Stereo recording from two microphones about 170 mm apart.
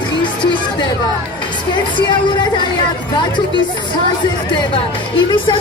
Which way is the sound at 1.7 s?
25° left (ahead or behind).